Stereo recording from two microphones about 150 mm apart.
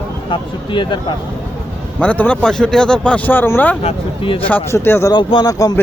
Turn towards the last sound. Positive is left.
turn(degrees=25)  # may be behind; listen again after turning